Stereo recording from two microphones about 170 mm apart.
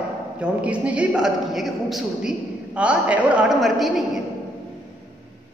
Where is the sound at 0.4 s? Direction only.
5° right (ahead or behind).